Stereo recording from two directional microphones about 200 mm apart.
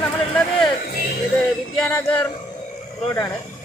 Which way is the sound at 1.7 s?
5° left (ahead or behind).